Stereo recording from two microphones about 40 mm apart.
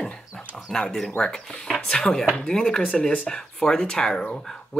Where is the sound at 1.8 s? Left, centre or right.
Centre.